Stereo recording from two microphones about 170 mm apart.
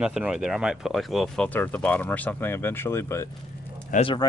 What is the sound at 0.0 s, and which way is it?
A man's voice, 5° right (ahead or behind).